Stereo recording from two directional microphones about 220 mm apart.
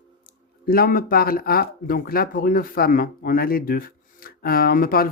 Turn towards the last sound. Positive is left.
turn(degrees=40)  # may be behind; listen again after turning